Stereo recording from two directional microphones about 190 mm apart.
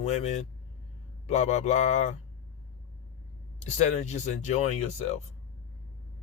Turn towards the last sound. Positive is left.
turn(degrees=35)  # may be behind; listen again after turning